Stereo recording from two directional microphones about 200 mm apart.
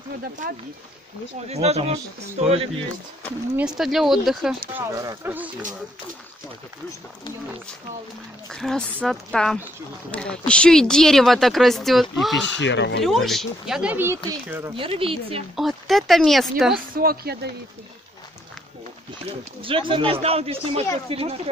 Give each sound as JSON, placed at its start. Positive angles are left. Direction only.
{"t": 0.4, "sound": "speech", "side_deg": -40}
{"t": 3.5, "sound": "a woman's voice", "side_deg": -5}
{"t": 4.7, "sound": "speech", "side_deg": -15}
{"t": 8.5, "sound": "a woman's voice", "side_deg": 5}
{"t": 12.4, "sound": "speech", "side_deg": 65}
{"t": 13.0, "sound": "a woman's voice", "side_deg": 0}
{"t": 14.8, "sound": "speech", "side_deg": -25}
{"t": 15.5, "sound": "a woman's voice", "side_deg": 0}
{"t": 16.9, "sound": "a woman's voice", "side_deg": -50}
{"t": 19.6, "sound": "speech", "side_deg": -25}